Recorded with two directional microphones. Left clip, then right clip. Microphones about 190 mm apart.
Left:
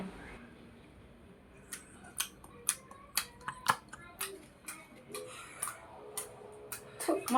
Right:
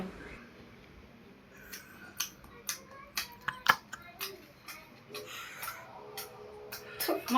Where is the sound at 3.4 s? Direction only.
5° left (ahead or behind).